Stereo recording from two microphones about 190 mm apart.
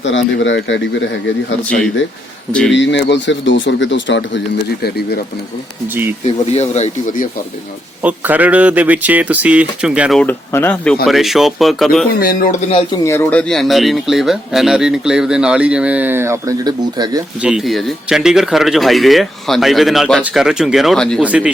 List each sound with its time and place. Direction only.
0.0 s speech: 75° left (ahead or behind)
2.5 s speech: 5° left (ahead or behind)
2.7 s speech: 70° left (ahead or behind)
4.8 s speech: 55° left (ahead or behind)
5.9 s speech: 10° right (ahead or behind)
6.2 s speech: 35° left (ahead or behind)
8.0 s speech: 10° right (ahead or behind); by 10.9 s 10° left (ahead or behind)
11.0 s speech: centre (ahead or behind)
12.2 s speech: 45° left (ahead or behind)
13.1 s speech: 10° left (ahead or behind); by 17.2 s 20° right (ahead or behind)
17.4 s speech: 5° right (ahead or behind)